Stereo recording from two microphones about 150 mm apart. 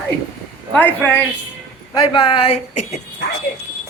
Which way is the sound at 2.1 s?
35° left (ahead or behind).